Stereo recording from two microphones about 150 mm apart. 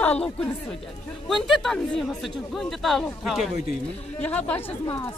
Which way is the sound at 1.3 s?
Centre (ahead or behind).